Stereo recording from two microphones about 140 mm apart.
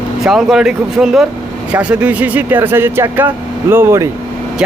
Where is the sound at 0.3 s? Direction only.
5° right (ahead or behind); by 4.1 s 20° right (ahead or behind).